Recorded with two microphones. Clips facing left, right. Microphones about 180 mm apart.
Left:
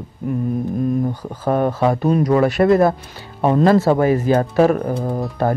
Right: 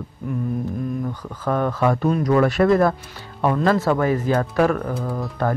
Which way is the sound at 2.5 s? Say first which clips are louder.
Left 3 dB; centre (ahead or behind).